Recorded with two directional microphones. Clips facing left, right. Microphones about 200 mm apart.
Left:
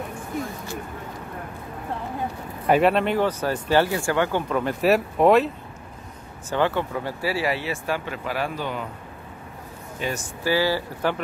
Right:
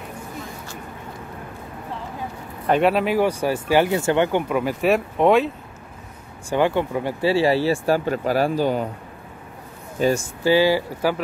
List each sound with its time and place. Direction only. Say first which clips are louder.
2.7 s speech: right 1 dB; centre (ahead or behind)
4.8 s speech: even; centre (ahead or behind)
6.5 s speech: right 3 dB; 15° right (ahead or behind); by 8.8 s 35° right (ahead or behind)
10.0 s speech: right 9 dB; 40° right (ahead or behind)
10.4 s speech: right 5 dB; 20° right (ahead or behind)